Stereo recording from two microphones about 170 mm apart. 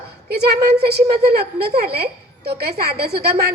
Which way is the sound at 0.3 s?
70° right (ahead or behind).